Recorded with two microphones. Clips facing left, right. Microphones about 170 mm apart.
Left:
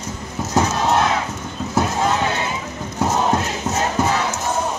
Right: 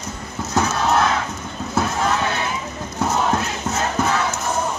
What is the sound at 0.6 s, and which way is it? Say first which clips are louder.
Battle cry: left 1 dB; 20° left (ahead or behind).